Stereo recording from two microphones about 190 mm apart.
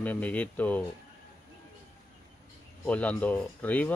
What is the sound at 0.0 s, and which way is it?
Speech, 10° left (ahead or behind).